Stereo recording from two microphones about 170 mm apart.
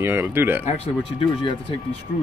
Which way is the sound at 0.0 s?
15° right (ahead or behind).